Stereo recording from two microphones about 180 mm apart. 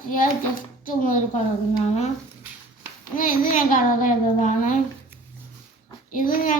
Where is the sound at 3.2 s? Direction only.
50° left (ahead or behind).